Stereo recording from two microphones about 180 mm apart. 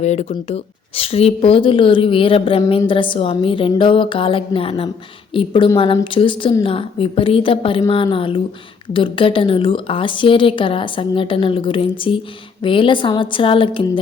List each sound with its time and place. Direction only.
0.0 s a woman's voice: 40° left (ahead or behind)